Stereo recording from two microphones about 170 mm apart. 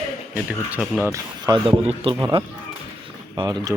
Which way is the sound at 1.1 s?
25° right (ahead or behind).